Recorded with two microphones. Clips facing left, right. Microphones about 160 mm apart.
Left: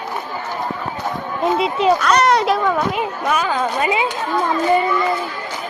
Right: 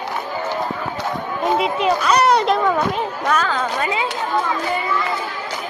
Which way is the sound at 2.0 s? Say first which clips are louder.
Even; centre (ahead or behind).